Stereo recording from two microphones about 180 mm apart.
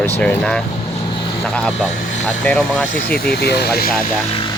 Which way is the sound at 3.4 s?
65° left (ahead or behind).